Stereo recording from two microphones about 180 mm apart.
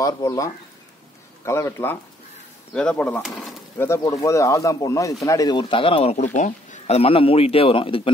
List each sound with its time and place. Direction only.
0.0 s speech: 20° left (ahead or behind); by 3.6 s centre (ahead or behind)
3.7 s speech: 15° left (ahead or behind); by 8.1 s 30° left (ahead or behind)